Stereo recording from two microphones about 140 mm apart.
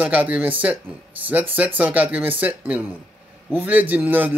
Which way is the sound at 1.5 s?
10° right (ahead or behind).